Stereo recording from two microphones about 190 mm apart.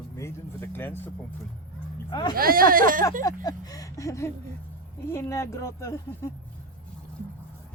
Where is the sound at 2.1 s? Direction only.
25° left (ahead or behind).